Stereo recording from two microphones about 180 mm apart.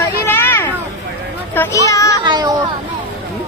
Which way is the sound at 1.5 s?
15° left (ahead or behind).